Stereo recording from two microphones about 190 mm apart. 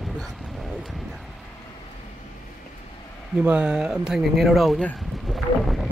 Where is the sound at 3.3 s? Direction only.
5° right (ahead or behind).